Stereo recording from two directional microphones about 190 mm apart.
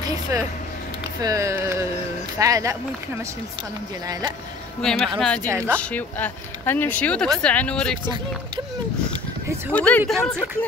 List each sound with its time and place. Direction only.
0.3 s speech: 15° right (ahead or behind)
4.8 s speech: 5° left (ahead or behind)
9.7 s speech: 5° left (ahead or behind)